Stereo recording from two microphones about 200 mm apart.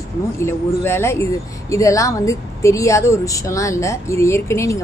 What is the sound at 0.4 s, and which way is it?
A woman's voice, 10° left (ahead or behind).